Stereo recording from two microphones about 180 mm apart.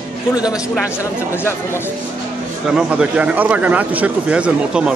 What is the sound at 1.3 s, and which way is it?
Speech, 15° left (ahead or behind).